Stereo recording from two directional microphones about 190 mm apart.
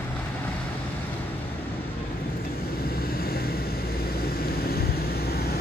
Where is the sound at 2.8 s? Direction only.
50° left (ahead or behind).